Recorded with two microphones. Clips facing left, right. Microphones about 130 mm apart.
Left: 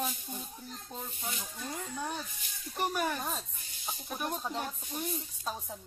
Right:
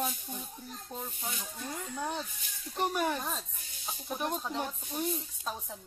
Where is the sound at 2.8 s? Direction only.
20° right (ahead or behind).